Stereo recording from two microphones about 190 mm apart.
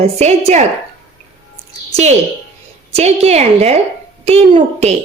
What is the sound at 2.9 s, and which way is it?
A woman's voice, 35° right (ahead or behind).